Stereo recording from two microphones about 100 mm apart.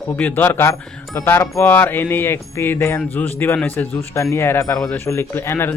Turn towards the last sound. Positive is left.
turn(degrees=20)  # may be behind; listen again after turning